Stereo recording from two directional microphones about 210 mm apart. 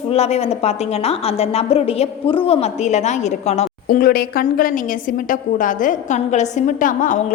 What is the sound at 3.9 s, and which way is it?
A woman's voice, 45° left (ahead or behind).